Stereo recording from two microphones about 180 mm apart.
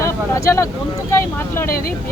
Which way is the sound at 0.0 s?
15° left (ahead or behind).